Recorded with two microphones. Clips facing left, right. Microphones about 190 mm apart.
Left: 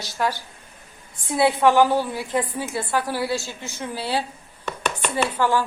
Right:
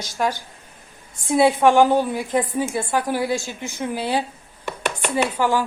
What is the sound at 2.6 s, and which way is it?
Speech, 45° right (ahead or behind).